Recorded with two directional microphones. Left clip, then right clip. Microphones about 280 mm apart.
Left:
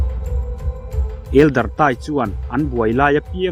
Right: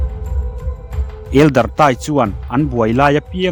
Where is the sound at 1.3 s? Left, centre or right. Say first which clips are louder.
Right 2 dB; right.